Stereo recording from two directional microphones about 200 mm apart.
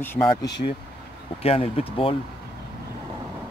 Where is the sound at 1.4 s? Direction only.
30° left (ahead or behind).